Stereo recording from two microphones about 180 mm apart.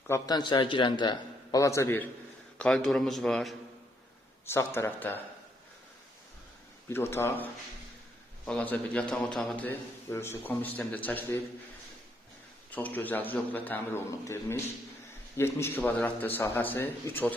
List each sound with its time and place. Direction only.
0.1 s a man's voice: 20° left (ahead or behind); by 3.5 s centre (ahead or behind)
4.4 s a man's voice: 15° left (ahead or behind)
6.9 s a man's voice: 15° left (ahead or behind)
12.7 s a man's voice: 10° left (ahead or behind)